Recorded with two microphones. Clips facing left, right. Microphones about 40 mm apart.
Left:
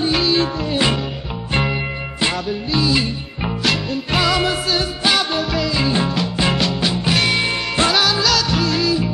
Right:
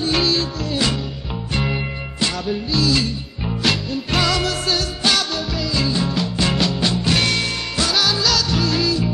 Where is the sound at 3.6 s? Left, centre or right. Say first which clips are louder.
Even; centre.